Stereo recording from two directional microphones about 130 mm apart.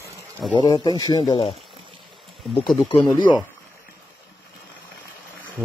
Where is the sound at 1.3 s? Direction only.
45° left (ahead or behind).